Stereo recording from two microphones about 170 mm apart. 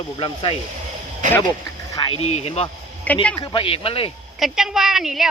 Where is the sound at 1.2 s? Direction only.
50° right (ahead or behind).